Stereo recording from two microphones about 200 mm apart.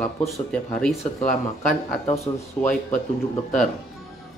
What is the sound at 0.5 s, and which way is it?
Speech, 5° left (ahead or behind).